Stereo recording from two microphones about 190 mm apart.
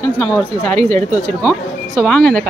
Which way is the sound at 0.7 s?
40° right (ahead or behind).